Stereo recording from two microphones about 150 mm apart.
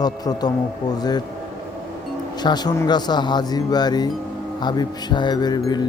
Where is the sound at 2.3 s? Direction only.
30° left (ahead or behind).